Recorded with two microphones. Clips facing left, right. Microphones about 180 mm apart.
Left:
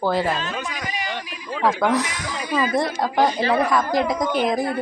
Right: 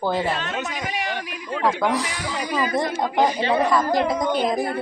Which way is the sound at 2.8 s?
15° right (ahead or behind).